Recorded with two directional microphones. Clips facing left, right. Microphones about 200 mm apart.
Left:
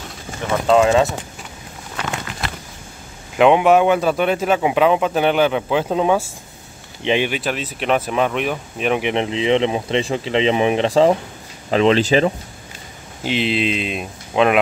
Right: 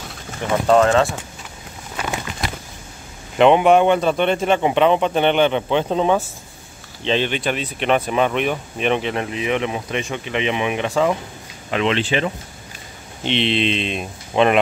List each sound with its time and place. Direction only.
0.7 s speech: 10° left (ahead or behind)
2.0 s a sound: 15° right (ahead or behind)
3.3 s a man's voice: centre (ahead or behind)
9.0 s speech: 20° left (ahead or behind); by 12.3 s 40° left (ahead or behind)
13.2 s a man's voice: 5° left (ahead or behind)